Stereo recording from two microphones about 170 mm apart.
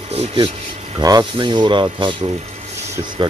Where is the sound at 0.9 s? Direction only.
25° right (ahead or behind).